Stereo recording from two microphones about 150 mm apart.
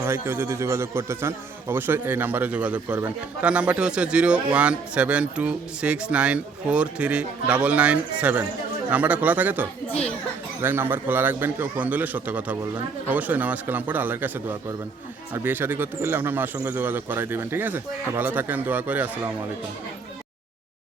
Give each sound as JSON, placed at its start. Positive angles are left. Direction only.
{"t": 0.0, "sound": "speech", "side_deg": -20}